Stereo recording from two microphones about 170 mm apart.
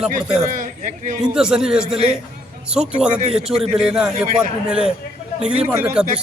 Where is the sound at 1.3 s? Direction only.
5° right (ahead or behind).